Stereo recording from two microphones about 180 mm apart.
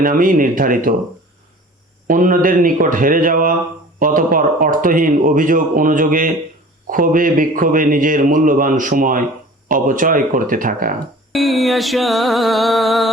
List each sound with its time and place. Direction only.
0.0 s speech: 50° right (ahead or behind)
2.0 s speech: 50° right (ahead or behind)
11.3 s a sound: centre (ahead or behind)